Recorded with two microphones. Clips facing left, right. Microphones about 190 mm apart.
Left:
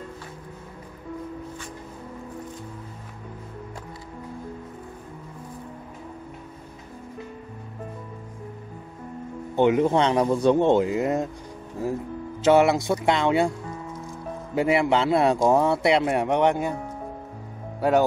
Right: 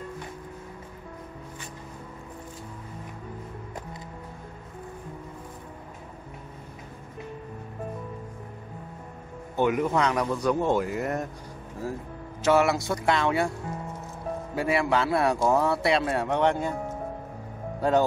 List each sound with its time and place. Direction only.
9.6 s speech: 25° left (ahead or behind)
12.4 s speech: 20° left (ahead or behind)
14.5 s speech: 20° left (ahead or behind)
17.7 s speech: 10° left (ahead or behind)